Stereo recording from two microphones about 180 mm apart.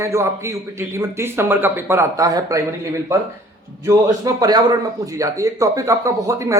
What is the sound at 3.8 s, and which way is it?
A man's voice, 20° right (ahead or behind).